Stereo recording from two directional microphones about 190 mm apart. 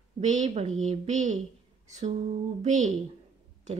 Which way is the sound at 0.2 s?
40° right (ahead or behind).